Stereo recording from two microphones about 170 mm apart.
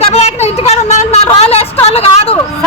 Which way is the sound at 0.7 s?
40° left (ahead or behind).